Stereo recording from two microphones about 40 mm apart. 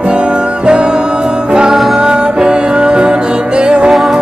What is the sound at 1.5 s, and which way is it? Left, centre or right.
Music, right.